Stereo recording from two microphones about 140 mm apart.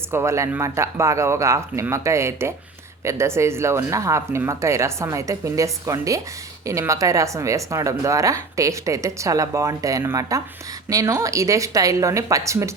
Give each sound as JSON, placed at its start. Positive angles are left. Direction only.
{"t": 0.1, "sound": "a woman's voice", "side_deg": -20}